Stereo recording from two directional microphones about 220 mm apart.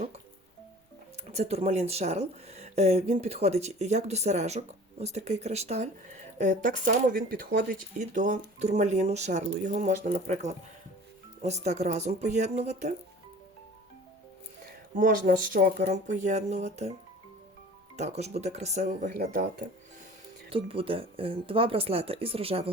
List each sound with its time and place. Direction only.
1.3 s speech: 30° right (ahead or behind)
15.3 s speech: 40° right (ahead or behind)
17.9 s speech: 30° right (ahead or behind)
20.5 s speech: 25° right (ahead or behind)